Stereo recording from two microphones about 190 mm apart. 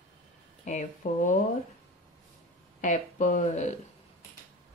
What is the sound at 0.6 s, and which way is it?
Speech, 40° left (ahead or behind).